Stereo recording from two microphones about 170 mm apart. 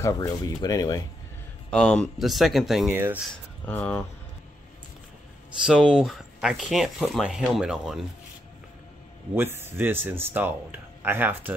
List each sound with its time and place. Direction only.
0.0 s speech: 20° left (ahead or behind)
1.7 s speech: 5° left (ahead or behind)
2.9 s speech: 15° right (ahead or behind)
3.6 s speech: 10° left (ahead or behind)
5.7 s speech: 5° right (ahead or behind)
9.3 s speech: 15° right (ahead or behind)